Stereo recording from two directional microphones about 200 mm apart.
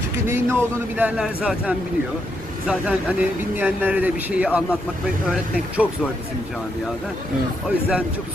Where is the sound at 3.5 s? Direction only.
10° right (ahead or behind).